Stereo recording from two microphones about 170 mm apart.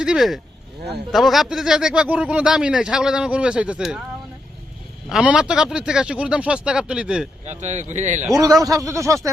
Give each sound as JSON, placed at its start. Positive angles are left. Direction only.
{"t": 0.0, "sound": "speech", "side_deg": -5}
{"t": 5.0, "sound": "speech", "side_deg": -5}
{"t": 7.4, "sound": "speech", "side_deg": -40}
{"t": 8.3, "sound": "speech", "side_deg": -20}